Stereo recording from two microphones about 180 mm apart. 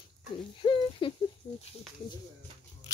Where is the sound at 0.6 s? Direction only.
30° left (ahead or behind).